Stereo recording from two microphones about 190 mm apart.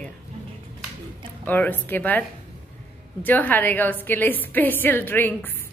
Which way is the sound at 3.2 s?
10° left (ahead or behind).